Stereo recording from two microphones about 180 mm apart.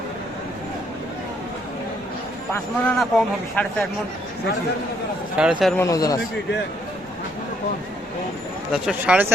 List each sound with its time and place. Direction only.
2.5 s a man's voice: 5° left (ahead or behind)
5.4 s speech: 5° right (ahead or behind)
5.7 s a man's voice: 15° left (ahead or behind)
8.7 s speech: 5° right (ahead or behind)